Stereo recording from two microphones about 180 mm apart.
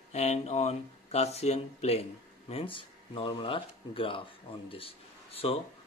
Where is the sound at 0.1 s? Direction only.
35° left (ahead or behind).